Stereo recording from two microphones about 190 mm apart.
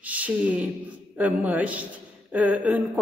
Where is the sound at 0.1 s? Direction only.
10° right (ahead or behind).